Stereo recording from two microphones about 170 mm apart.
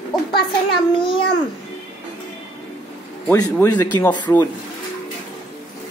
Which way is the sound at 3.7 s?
25° left (ahead or behind).